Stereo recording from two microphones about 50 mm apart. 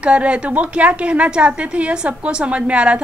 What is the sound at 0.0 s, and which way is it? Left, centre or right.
A woman's voice, right.